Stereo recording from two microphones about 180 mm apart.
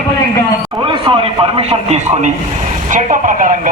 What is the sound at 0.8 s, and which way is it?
Speech, 30° right (ahead or behind).